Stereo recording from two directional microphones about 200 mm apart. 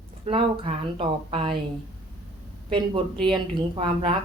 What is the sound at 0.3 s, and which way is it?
A woman's voice, 25° right (ahead or behind).